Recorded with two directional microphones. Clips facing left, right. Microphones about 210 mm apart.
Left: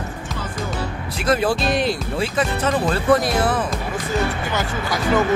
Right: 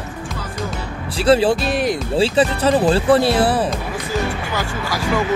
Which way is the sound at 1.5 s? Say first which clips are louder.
Right 1 dB; 5° right (ahead or behind).